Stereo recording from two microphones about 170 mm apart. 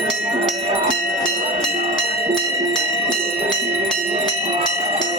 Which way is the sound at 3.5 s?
Centre (ahead or behind).